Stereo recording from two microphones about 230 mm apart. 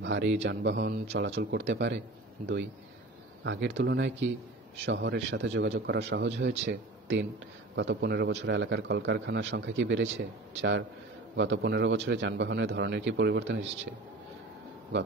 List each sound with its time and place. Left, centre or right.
0.0 s a man's voice: right